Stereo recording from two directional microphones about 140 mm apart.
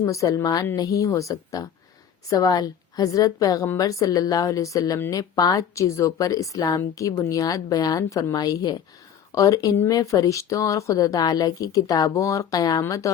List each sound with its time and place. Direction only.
0.0 s a woman's voice: 25° left (ahead or behind)